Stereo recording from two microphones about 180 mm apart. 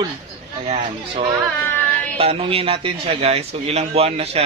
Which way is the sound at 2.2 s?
35° right (ahead or behind).